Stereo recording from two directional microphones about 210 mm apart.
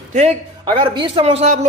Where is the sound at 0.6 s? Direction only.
20° right (ahead or behind).